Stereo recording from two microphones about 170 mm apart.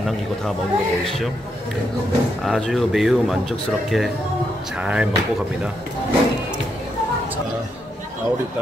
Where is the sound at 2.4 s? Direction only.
Centre (ahead or behind).